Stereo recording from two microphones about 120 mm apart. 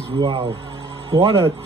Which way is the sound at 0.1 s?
50° right (ahead or behind).